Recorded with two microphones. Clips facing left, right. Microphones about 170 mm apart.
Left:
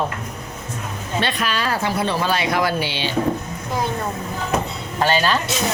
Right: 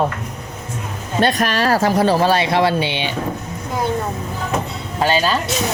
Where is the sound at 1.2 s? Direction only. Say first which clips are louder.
Right 6 dB; 45° right (ahead or behind); by 3.1 s 20° right (ahead or behind).